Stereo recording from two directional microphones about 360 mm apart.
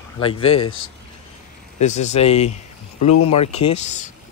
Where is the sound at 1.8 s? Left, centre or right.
Centre.